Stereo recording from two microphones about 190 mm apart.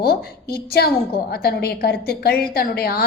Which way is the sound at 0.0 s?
55° left (ahead or behind).